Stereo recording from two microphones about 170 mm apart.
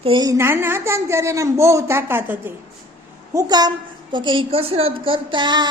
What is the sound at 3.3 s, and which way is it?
A woman's voice, 25° right (ahead or behind).